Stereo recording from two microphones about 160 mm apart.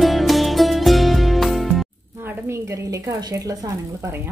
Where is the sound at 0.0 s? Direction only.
Centre (ahead or behind).